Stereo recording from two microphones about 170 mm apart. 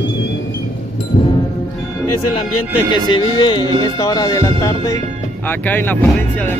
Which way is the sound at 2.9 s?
30° left (ahead or behind).